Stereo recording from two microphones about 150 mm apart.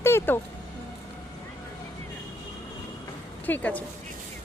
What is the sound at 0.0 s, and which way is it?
Music, 15° left (ahead or behind).